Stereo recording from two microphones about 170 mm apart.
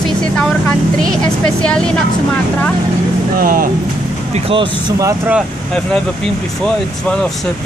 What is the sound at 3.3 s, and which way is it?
Speech, 60° right (ahead or behind).